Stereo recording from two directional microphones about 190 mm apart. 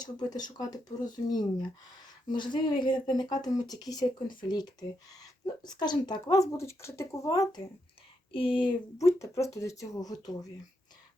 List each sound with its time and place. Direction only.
0.0 s speech: 20° left (ahead or behind)
8.3 s speech: 30° left (ahead or behind)